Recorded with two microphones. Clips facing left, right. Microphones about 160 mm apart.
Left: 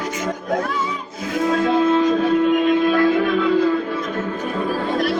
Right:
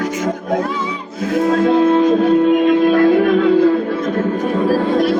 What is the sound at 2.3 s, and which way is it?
Music, 35° right (ahead or behind).